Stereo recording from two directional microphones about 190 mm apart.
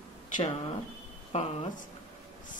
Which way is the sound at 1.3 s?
35° left (ahead or behind).